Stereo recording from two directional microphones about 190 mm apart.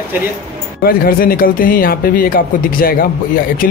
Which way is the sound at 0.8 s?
50° left (ahead or behind).